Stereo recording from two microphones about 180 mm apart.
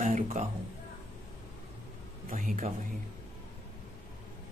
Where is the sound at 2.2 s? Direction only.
45° right (ahead or behind).